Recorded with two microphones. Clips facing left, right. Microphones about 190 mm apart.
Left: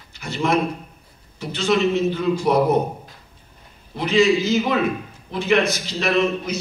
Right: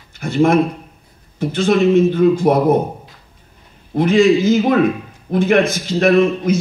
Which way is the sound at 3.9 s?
50° right (ahead or behind).